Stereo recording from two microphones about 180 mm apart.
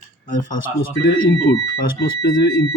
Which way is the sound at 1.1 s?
90° left.